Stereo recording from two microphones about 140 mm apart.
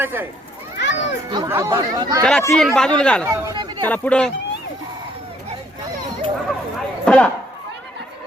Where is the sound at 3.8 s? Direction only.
10° left (ahead or behind).